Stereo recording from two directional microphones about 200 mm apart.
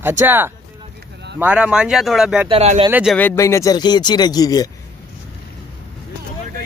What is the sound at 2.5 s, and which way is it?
Speech, 30° right (ahead or behind).